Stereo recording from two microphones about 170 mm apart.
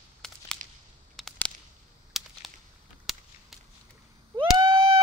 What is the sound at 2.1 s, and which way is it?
Whip, centre (ahead or behind).